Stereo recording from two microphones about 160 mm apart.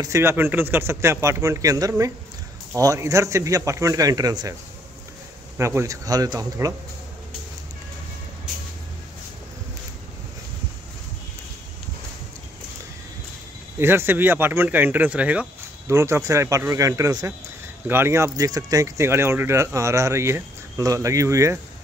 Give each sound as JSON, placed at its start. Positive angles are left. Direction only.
{"t": 0.0, "sound": "speech", "side_deg": -15}
{"t": 5.6, "sound": "speech", "side_deg": -15}
{"t": 13.7, "sound": "speech", "side_deg": -15}